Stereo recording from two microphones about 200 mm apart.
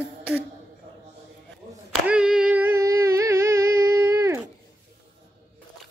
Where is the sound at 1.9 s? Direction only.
5° right (ahead or behind).